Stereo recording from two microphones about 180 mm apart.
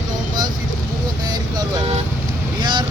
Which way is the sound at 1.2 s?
20° right (ahead or behind).